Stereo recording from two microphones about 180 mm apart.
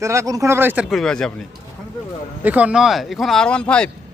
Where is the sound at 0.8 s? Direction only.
5° left (ahead or behind).